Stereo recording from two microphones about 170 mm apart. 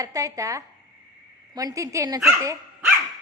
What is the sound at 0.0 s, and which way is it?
Speech, 20° right (ahead or behind).